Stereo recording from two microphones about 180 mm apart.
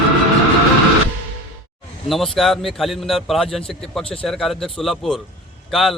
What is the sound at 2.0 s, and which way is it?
A man's voice, centre (ahead or behind).